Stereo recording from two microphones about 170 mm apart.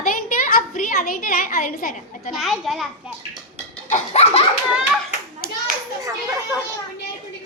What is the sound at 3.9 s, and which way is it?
Baby laughter, 40° left (ahead or behind).